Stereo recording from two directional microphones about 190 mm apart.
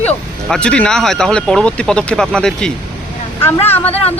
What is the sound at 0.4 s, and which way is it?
Speech, 5° left (ahead or behind).